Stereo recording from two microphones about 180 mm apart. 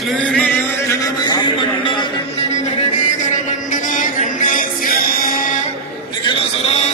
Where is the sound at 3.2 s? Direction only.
45° left (ahead or behind).